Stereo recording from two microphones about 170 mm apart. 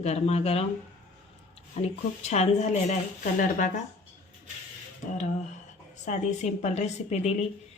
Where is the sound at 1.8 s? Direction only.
40° left (ahead or behind).